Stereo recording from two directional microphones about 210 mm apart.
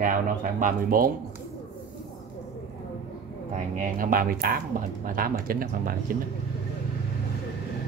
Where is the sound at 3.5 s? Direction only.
40° right (ahead or behind).